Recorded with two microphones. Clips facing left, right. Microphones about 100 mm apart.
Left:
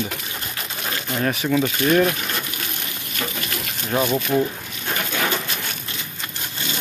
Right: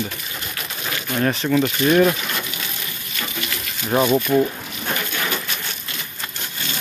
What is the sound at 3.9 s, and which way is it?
Speech, 15° right (ahead or behind).